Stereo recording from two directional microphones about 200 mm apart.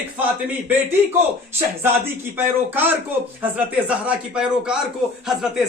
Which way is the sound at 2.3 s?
10° right (ahead or behind).